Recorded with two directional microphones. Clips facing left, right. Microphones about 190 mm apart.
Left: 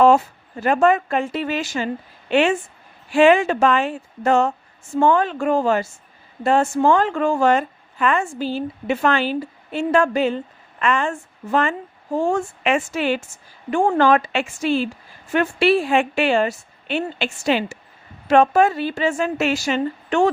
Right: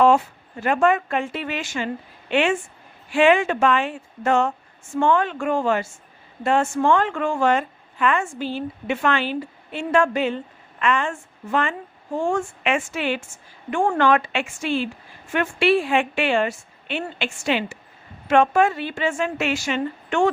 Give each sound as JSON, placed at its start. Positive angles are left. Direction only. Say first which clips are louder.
{"t": 0.6, "sound": "a woman's voice", "louder": "left 3 dB", "side_deg": 35}